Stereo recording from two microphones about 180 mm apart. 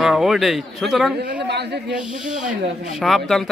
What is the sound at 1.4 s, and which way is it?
Speech, 70° right (ahead or behind).